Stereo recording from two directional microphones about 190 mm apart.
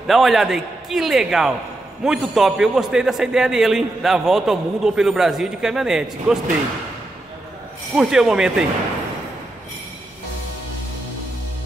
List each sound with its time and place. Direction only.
0.0 s a man's voice: centre (ahead or behind)
7.9 s a man's voice: 5° right (ahead or behind)